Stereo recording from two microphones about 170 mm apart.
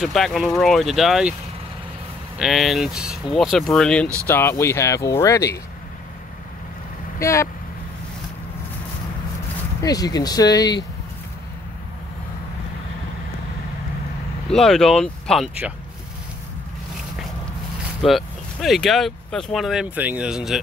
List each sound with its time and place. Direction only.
0.0 s speech: centre (ahead or behind)
2.3 s speech: centre (ahead or behind); by 5.6 s 20° left (ahead or behind)
7.2 s speech: 15° left (ahead or behind)
9.8 s speech: 20° left (ahead or behind)
14.5 s speech: 5° left (ahead or behind)
18.0 s speech: centre (ahead or behind)